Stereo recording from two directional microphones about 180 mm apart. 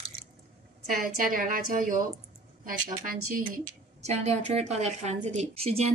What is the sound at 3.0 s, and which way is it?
A woman's voice, 45° right (ahead or behind).